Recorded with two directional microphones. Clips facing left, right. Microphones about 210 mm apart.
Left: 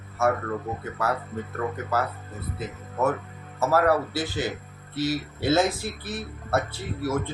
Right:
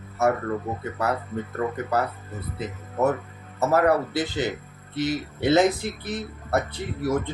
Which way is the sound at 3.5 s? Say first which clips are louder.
Right 1 dB; 20° right (ahead or behind).